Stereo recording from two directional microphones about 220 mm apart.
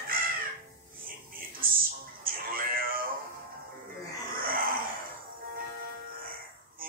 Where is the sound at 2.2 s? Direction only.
40° right (ahead or behind).